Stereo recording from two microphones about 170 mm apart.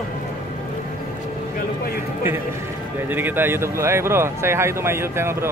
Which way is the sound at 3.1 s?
10° right (ahead or behind).